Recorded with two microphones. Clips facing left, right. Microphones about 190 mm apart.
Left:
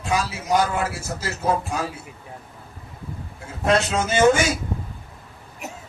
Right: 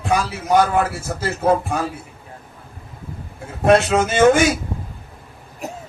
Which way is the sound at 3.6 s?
60° right (ahead or behind).